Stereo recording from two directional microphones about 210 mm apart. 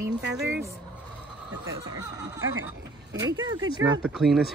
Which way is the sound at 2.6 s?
15° right (ahead or behind).